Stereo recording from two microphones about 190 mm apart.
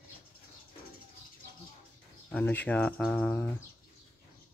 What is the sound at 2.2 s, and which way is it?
Speech, 10° left (ahead or behind).